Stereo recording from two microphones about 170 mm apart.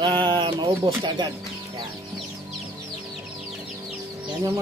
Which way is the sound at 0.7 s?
15° right (ahead or behind).